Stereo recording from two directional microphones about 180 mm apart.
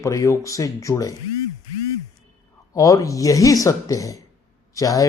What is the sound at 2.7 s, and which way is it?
Speech, 20° left (ahead or behind).